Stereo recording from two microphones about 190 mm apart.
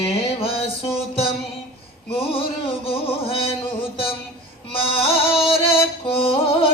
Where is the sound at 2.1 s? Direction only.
30° left (ahead or behind).